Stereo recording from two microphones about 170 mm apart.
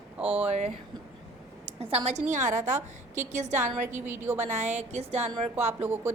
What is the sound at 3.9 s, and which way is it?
Speech, 15° right (ahead or behind).